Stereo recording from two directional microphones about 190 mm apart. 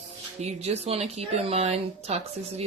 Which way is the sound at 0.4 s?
35° right (ahead or behind).